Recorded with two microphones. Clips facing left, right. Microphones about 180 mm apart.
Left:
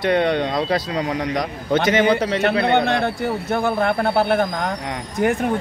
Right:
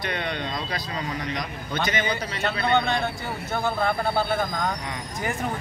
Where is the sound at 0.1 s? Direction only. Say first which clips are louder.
Left 13 dB; 60° left (ahead or behind).